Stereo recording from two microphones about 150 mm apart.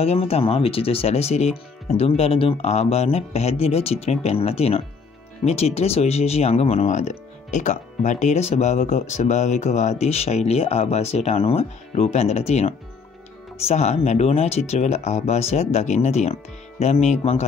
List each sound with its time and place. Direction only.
0.0 s speech: 45° left (ahead or behind)